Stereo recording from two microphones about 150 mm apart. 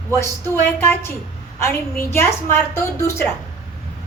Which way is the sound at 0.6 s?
15° left (ahead or behind).